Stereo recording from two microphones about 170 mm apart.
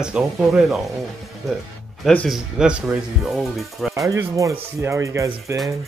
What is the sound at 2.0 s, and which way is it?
Speech, 5° left (ahead or behind).